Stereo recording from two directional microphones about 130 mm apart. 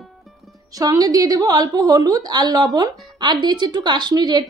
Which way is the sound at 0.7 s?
30° right (ahead or behind).